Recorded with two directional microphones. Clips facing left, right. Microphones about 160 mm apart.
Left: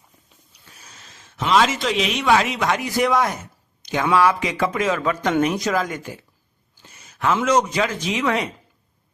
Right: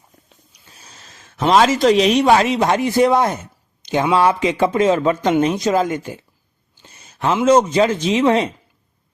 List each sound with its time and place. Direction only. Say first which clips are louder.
0.7 s a man's voice: right 2 dB; 30° right (ahead or behind)
6.8 s a sound: right 2 dB; 30° right (ahead or behind)
7.4 s speech: right 9 dB; 30° right (ahead or behind)